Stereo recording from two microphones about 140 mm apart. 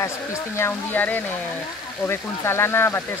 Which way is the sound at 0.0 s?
20° left (ahead or behind).